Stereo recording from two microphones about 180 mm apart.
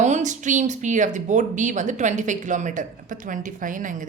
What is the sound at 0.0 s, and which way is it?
Speech, 40° right (ahead or behind).